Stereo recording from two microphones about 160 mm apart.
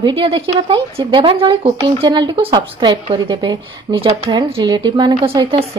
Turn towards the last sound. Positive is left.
turn(degrees=-35)  # may be behind; listen again after turning